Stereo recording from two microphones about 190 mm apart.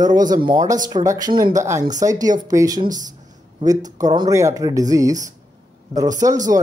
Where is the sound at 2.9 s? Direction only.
40° right (ahead or behind).